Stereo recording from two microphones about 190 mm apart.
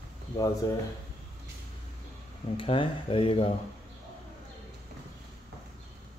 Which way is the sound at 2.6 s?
30° left (ahead or behind).